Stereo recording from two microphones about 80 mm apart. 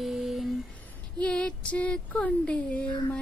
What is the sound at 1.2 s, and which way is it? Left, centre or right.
Female singing, centre.